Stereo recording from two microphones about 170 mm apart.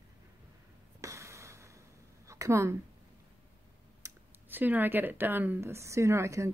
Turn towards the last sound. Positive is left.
turn(degrees=-15)  # may be behind; listen again after turning